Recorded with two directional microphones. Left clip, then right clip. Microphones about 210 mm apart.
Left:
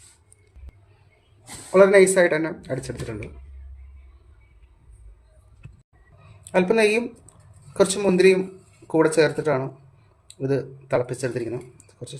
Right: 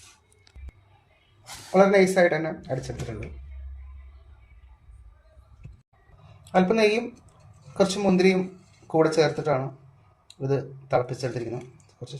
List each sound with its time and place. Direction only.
1.7 s speech: 25° left (ahead or behind)
6.4 s speech: 25° left (ahead or behind)
11.9 s a sound: 25° left (ahead or behind)